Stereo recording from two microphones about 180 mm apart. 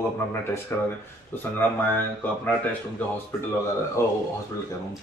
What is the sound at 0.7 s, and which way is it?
Speech, 10° left (ahead or behind).